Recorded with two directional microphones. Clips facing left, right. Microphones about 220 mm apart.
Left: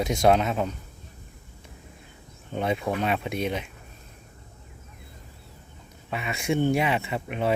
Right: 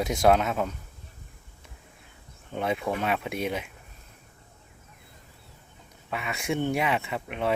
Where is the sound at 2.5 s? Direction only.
Centre (ahead or behind).